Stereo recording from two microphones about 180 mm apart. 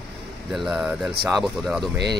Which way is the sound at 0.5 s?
Centre (ahead or behind).